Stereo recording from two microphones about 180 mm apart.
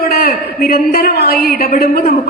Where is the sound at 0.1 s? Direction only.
55° left (ahead or behind).